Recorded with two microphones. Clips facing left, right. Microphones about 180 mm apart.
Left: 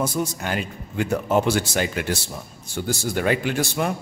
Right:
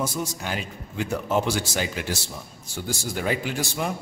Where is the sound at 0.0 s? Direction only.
55° left (ahead or behind).